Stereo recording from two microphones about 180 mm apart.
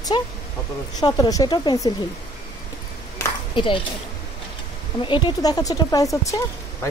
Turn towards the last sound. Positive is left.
turn(degrees=15)  # may be behind; listen again after turning